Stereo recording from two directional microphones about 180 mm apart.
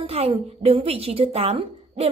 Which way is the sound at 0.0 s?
35° right (ahead or behind).